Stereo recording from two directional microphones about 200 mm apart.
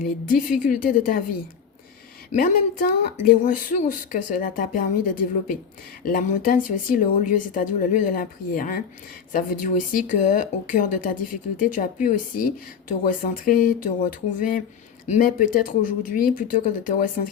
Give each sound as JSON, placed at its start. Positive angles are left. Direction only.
{"t": 0.0, "sound": "speech", "side_deg": 45}
{"t": 2.3, "sound": "speech", "side_deg": 40}
{"t": 6.1, "sound": "speech", "side_deg": 45}